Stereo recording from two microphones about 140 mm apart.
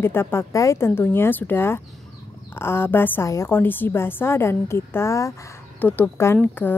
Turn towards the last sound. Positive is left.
turn(degrees=15)  # may be behind; listen again after turning